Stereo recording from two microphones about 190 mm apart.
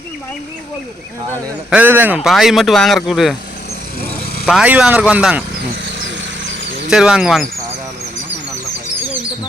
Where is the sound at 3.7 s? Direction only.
55° left (ahead or behind).